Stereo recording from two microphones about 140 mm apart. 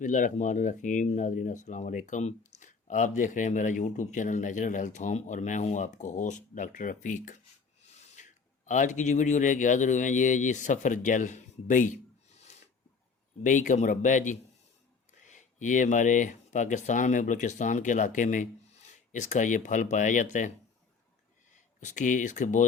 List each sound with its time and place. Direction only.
0.0 s speech: 65° left (ahead or behind)
13.4 s speech: 65° left (ahead or behind)
21.8 s speech: 60° left (ahead or behind)